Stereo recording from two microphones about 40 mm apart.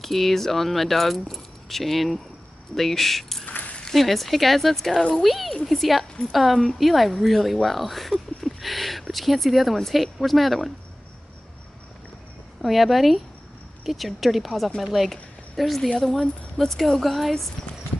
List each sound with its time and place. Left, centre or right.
0.0 s speech: centre
3.4 s keys jangling: left
3.9 s speech: centre
12.6 s a woman's voice: centre